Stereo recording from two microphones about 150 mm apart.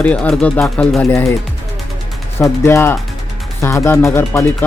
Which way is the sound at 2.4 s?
15° left (ahead or behind).